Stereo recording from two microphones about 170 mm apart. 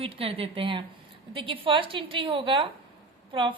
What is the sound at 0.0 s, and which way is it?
A woman's voice, 35° right (ahead or behind).